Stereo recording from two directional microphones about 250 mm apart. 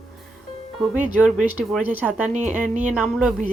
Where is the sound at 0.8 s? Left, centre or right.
Centre.